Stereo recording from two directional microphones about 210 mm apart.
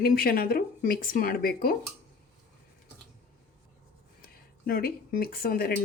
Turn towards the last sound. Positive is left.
turn(degrees=45)  # may be behind; listen again after turning